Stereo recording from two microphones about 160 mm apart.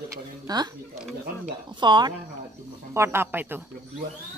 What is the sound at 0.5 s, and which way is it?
Speech, 25° right (ahead or behind).